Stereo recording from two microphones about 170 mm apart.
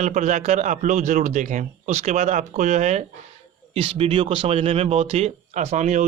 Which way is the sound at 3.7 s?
35° right (ahead or behind).